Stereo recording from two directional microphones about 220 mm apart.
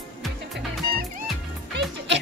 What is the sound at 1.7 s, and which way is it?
Music, 55° right (ahead or behind).